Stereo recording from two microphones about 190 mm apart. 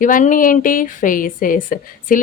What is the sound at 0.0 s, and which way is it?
A woman's voice, 45° left (ahead or behind).